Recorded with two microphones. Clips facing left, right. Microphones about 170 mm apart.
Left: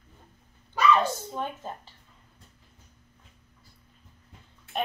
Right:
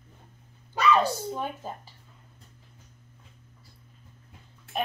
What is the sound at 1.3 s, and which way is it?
Speech, 10° right (ahead or behind).